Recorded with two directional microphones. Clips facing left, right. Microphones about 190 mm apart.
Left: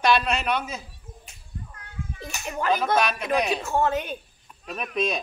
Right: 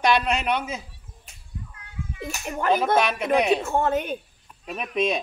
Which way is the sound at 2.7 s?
20° right (ahead or behind).